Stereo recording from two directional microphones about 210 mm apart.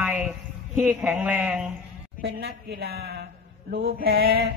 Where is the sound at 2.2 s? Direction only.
50° right (ahead or behind).